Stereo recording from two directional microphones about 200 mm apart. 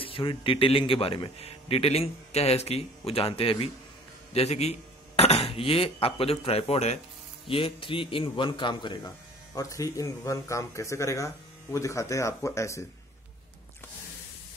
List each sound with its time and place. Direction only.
0.0 s a man's voice: 25° left (ahead or behind)